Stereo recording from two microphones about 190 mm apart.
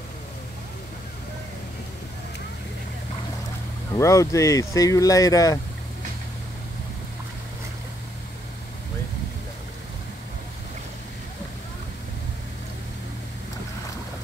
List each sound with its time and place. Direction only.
3.9 s speech: 15° left (ahead or behind)